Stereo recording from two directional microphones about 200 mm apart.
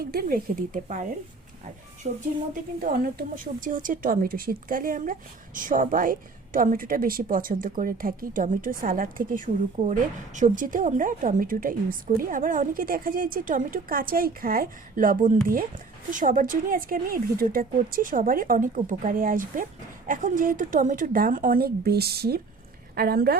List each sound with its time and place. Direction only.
0.0 s a woman's voice: 50° right (ahead or behind)
2.0 s a woman's voice: 30° right (ahead or behind)
2.8 s a woman's voice: 50° right (ahead or behind)